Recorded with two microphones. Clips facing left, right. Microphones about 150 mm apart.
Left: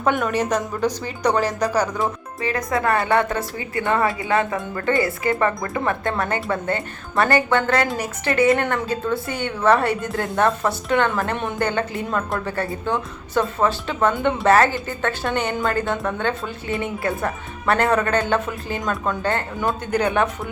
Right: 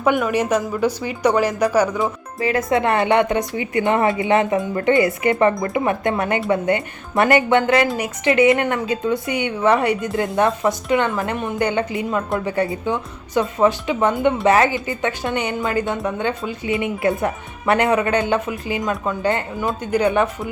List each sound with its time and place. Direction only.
0.0 s speech: 5° right (ahead or behind)
2.6 s a woman's voice: 25° right (ahead or behind)
7.8 s speech: 10° right (ahead or behind)
11.6 s speech: 15° right (ahead or behind)
14.1 s speech: centre (ahead or behind)
14.4 s speech: 15° right (ahead or behind)